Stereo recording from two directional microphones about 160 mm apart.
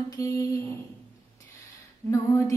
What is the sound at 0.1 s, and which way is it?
Female singing, 20° left (ahead or behind).